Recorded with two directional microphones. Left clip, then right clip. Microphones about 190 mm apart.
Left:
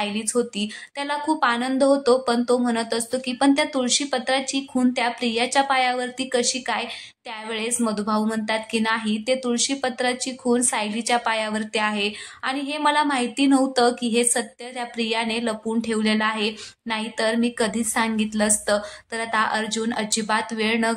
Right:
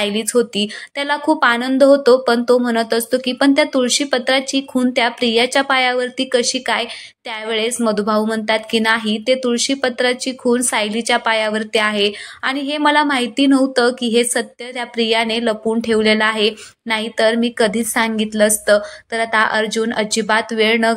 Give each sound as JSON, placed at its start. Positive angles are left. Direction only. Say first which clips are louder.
{"t": 0.0, "sound": "a woman's voice", "louder": "right 7 dB", "side_deg": -20}